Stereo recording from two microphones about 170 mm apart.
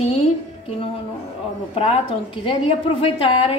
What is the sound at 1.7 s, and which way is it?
Speech, 35° left (ahead or behind).